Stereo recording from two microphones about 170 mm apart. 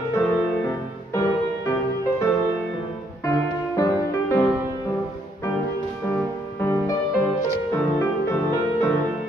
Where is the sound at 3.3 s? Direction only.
20° left (ahead or behind).